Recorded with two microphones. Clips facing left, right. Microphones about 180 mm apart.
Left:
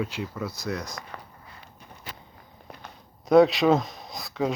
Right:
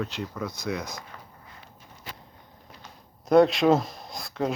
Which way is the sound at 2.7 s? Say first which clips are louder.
Left 6 dB; 70° left (ahead or behind).